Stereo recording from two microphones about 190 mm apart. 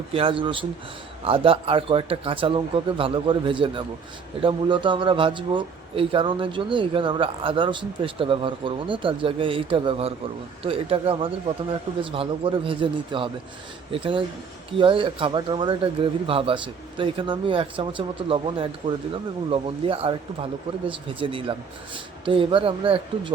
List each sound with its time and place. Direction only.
0.1 s a man's voice: 30° right (ahead or behind)